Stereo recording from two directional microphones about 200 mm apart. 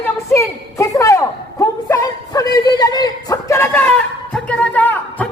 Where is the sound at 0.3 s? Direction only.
15° left (ahead or behind).